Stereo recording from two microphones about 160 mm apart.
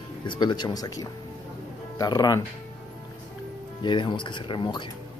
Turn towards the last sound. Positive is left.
turn(degrees=30)  # may be behind; listen again after turning